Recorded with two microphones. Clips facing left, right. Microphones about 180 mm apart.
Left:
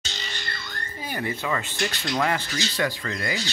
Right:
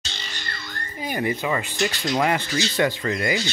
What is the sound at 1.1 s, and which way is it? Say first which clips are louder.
Speech: right 4 dB; 15° right (ahead or behind).